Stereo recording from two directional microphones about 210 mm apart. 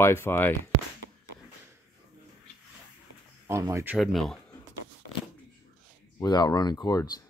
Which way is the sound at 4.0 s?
Centre (ahead or behind).